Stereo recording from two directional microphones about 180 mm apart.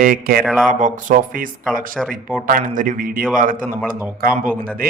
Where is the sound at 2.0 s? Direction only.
Centre (ahead or behind).